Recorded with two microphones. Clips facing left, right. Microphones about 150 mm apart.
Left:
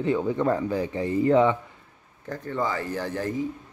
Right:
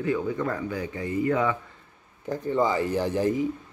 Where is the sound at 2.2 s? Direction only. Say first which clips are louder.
Right 4 dB; 15° right (ahead or behind).